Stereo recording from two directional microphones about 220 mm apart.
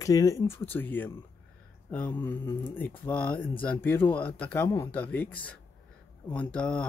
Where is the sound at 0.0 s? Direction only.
15° left (ahead or behind).